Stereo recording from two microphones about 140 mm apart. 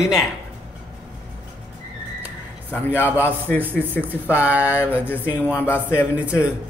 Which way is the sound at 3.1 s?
10° right (ahead or behind).